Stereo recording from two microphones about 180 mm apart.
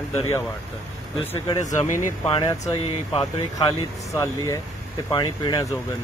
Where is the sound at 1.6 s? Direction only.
40° left (ahead or behind).